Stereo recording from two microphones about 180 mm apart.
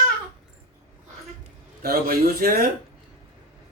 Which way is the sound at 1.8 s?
55° right (ahead or behind).